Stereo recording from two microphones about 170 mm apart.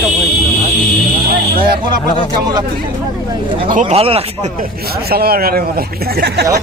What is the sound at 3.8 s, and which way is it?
Speech, 40° right (ahead or behind).